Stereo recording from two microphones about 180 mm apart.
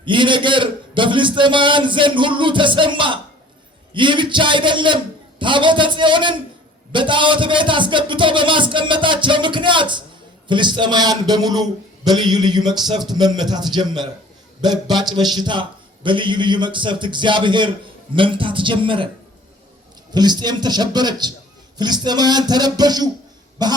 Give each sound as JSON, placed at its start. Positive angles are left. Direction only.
{"t": 0.0, "sound": "a man's voice", "side_deg": -25}
{"t": 20.1, "sound": "a man's voice", "side_deg": -25}